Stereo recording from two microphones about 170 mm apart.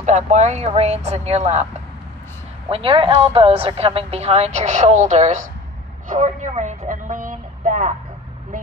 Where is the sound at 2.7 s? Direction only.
35° right (ahead or behind).